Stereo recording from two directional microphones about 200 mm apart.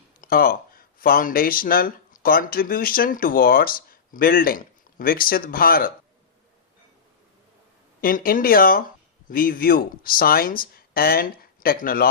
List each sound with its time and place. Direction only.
0.2 s speech: 45° left (ahead or behind)
8.0 s speech: 45° left (ahead or behind)